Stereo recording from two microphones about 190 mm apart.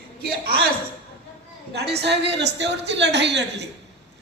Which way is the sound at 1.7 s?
60° right (ahead or behind).